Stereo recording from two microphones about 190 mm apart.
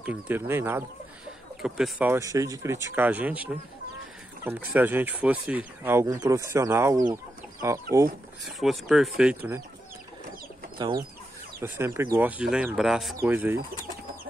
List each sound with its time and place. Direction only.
0.0 s speech: 10° right (ahead or behind)
8.5 s speech: centre (ahead or behind)
10.8 s speech: 20° right (ahead or behind); by 13.1 s centre (ahead or behind)
13.2 s speech: 10° right (ahead or behind)